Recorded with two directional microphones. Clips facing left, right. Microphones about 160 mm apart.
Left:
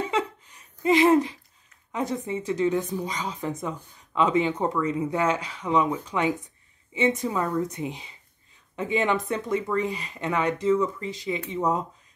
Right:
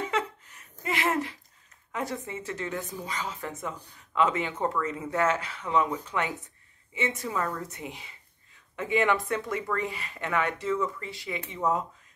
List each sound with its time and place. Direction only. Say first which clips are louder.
0.8 s speech: left 10 dB; 20° left (ahead or behind)